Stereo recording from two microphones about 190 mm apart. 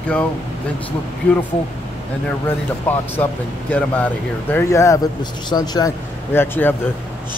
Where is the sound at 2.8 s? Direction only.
10° left (ahead or behind).